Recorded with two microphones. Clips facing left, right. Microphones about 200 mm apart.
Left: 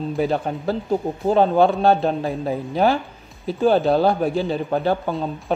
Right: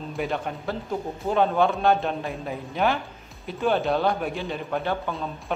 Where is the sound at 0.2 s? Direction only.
35° left (ahead or behind).